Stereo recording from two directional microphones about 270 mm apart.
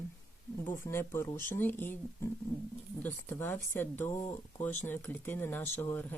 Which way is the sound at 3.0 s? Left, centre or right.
Centre.